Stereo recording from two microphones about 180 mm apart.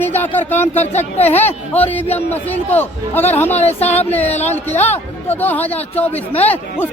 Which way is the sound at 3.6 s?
35° left (ahead or behind).